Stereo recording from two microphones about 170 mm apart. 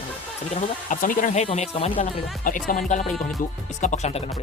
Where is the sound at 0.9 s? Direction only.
50° left (ahead or behind); by 2.0 s 35° left (ahead or behind).